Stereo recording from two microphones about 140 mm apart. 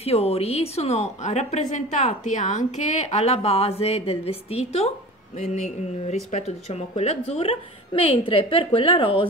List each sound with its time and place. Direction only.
0.0 s a woman's voice: 45° left (ahead or behind)
6.0 s a woman's voice: 50° left (ahead or behind)